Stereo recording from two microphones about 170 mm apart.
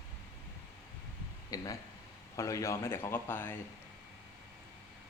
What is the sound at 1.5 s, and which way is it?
A man's voice, 20° left (ahead or behind).